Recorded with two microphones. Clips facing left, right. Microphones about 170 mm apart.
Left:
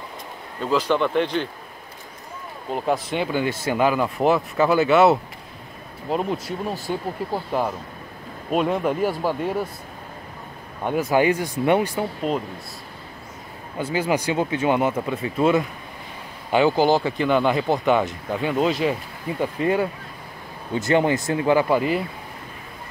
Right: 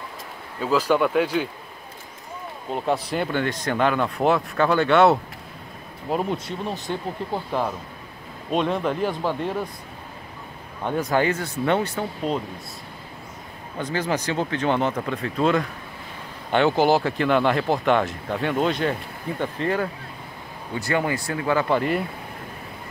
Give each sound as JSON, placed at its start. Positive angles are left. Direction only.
{"t": 0.6, "sound": "speech", "side_deg": -5}
{"t": 2.7, "sound": "speech", "side_deg": 0}
{"t": 8.5, "sound": "speech", "side_deg": 5}
{"t": 10.8, "sound": "speech", "side_deg": 10}
{"t": 13.7, "sound": "speech", "side_deg": 10}
{"t": 19.4, "sound": "speech", "side_deg": 15}
{"t": 21.6, "sound": "speech", "side_deg": 5}